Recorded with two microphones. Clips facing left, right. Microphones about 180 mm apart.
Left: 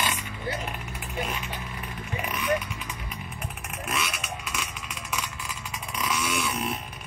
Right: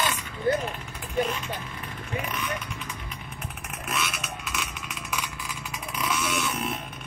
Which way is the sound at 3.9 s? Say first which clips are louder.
Even; centre (ahead or behind).